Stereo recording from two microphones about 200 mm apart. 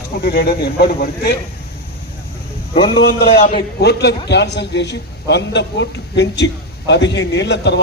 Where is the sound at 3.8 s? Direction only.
55° left (ahead or behind).